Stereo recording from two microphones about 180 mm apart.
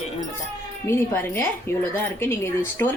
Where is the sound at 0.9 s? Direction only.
15° left (ahead or behind).